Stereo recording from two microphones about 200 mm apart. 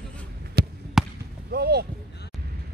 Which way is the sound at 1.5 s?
55° right (ahead or behind).